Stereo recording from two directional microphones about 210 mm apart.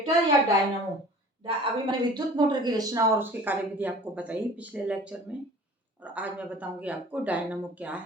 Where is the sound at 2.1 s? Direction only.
20° right (ahead or behind).